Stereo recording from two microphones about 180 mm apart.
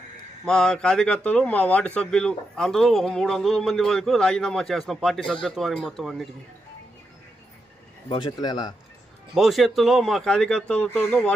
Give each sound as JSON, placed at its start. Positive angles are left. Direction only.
{"t": 0.4, "sound": "speech", "side_deg": 5}
{"t": 8.1, "sound": "a man's voice", "side_deg": 25}
{"t": 9.3, "sound": "speech", "side_deg": 0}